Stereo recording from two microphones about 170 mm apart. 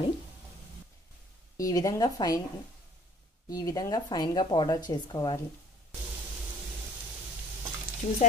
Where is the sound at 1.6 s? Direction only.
20° left (ahead or behind).